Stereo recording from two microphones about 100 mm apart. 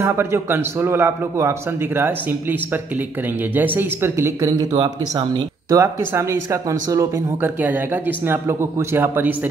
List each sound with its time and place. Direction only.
0.0 s speech: 25° right (ahead or behind)
3.5 s speech: 20° right (ahead or behind)
4.7 s speech: 50° right (ahead or behind)
7.4 s speech: 20° right (ahead or behind)